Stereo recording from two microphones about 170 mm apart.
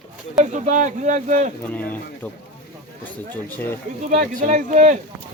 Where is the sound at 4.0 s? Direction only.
45° right (ahead or behind).